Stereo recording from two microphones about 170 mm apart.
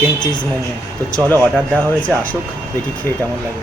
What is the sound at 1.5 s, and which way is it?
Speech, 10° left (ahead or behind).